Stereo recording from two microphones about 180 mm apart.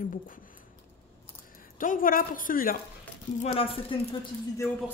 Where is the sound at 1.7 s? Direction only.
50° left (ahead or behind).